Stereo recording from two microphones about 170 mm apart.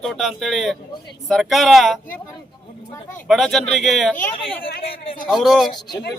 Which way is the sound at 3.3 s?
Centre (ahead or behind).